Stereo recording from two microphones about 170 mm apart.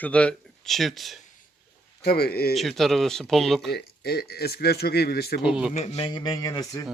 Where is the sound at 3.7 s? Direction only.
70° left (ahead or behind).